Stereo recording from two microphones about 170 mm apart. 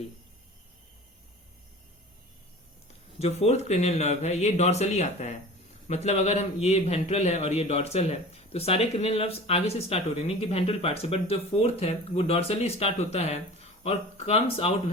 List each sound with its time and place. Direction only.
3.2 s a man's voice: 40° left (ahead or behind)